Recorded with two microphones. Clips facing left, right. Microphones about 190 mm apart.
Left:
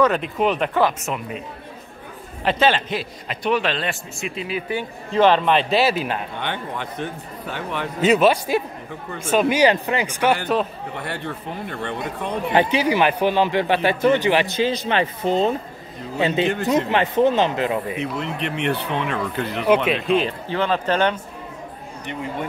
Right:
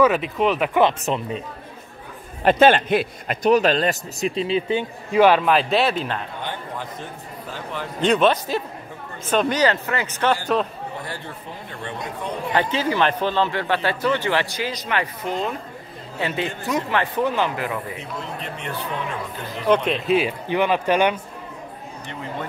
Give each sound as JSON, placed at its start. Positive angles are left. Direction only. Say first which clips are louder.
{"t": 0.0, "sound": "speech", "louder": "right 1 dB", "side_deg": -5}
{"t": 1.0, "sound": "speech", "louder": "right 3 dB", "side_deg": -30}
{"t": 2.4, "sound": "a man's voice", "louder": "right 4 dB", "side_deg": -50}
{"t": 3.4, "sound": "speech", "louder": "right 5 dB", "side_deg": -40}
{"t": 5.1, "sound": "speech", "louder": "right 1 dB", "side_deg": -10}
{"t": 6.4, "sound": "speech", "louder": "left 3 dB", "side_deg": 70}
{"t": 8.0, "sound": "speech", "louder": "left 2 dB", "side_deg": 5}
{"t": 10.4, "sound": "speech", "louder": "even", "side_deg": 0}
{"t": 11.0, "sound": "speech", "louder": "left 4 dB", "side_deg": 65}
{"t": 12.5, "sound": "speech", "louder": "left 3 dB", "side_deg": 15}
{"t": 18.2, "sound": "speech", "louder": "left 7 dB", "side_deg": 70}
{"t": 19.9, "sound": "speech", "louder": "even", "side_deg": -5}